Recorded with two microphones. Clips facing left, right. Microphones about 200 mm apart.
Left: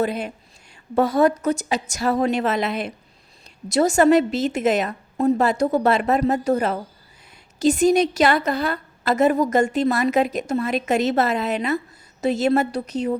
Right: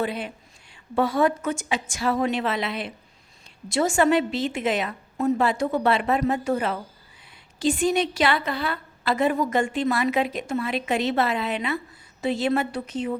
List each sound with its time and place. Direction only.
0.0 s a woman's voice: 45° left (ahead or behind)